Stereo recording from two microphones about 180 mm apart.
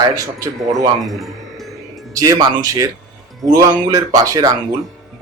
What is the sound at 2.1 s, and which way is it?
Speech, 20° right (ahead or behind).